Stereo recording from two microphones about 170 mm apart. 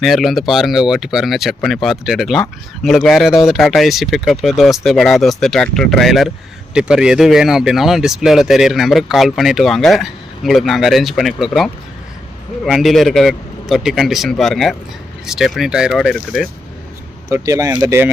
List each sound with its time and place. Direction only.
0.0 s speech: centre (ahead or behind)
17.2 s speech: 20° right (ahead or behind)